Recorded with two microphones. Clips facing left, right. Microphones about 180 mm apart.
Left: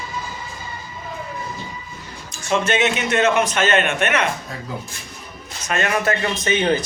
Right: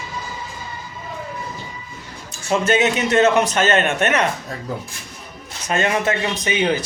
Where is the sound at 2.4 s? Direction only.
35° right (ahead or behind).